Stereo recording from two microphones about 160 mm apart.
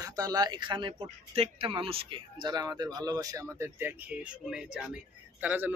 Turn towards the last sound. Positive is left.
turn(degrees=-10)  # may be behind; listen again after turning